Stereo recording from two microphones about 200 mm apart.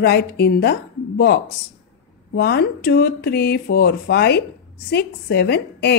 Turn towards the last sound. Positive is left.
turn(degrees=55)  # may be behind; listen again after turning